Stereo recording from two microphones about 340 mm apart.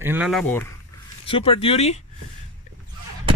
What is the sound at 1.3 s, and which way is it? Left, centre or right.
Speech, centre.